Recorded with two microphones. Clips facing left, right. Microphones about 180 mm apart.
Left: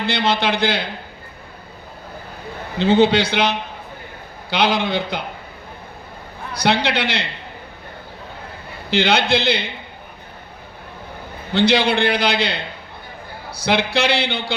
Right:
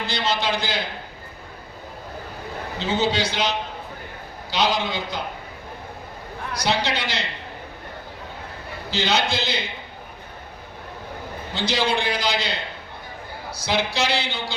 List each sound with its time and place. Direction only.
0.0 s a man's voice: 60° left (ahead or behind)
2.7 s a man's voice: 60° left (ahead or behind)
4.5 s a man's voice: 60° left (ahead or behind)
6.6 s a man's voice: 60° left (ahead or behind)
8.9 s a man's voice: 60° left (ahead or behind)
11.5 s a man's voice: 60° left (ahead or behind)
13.7 s a man's voice: 60° left (ahead or behind)